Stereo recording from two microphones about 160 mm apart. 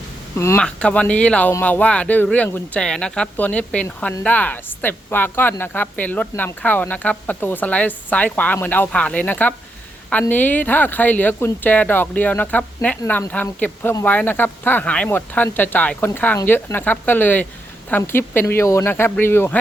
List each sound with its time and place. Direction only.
0.3 s a woman's voice: 15° left (ahead or behind)
3.8 s a woman's voice: 15° left (ahead or behind)